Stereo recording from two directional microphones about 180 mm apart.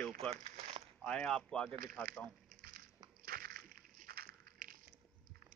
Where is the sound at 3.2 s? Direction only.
55° right (ahead or behind).